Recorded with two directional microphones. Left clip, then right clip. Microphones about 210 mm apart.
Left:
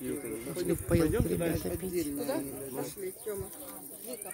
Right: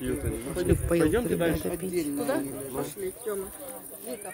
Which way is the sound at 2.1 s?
50° right (ahead or behind).